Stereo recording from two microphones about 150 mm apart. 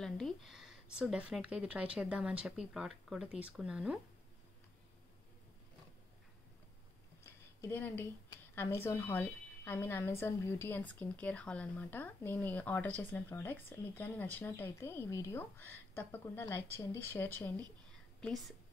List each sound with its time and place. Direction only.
0.0 s a woman's voice: centre (ahead or behind)
7.2 s a sound: 15° left (ahead or behind)
8.5 s a woman's voice: 15° left (ahead or behind)